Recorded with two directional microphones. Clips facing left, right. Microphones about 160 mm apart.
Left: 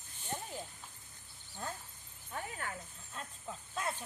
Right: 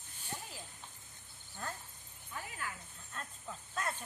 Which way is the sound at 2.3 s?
30° left (ahead or behind).